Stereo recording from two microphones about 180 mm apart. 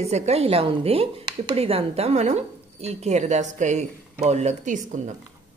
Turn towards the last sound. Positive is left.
turn(degrees=-45)  # may be behind; listen again after turning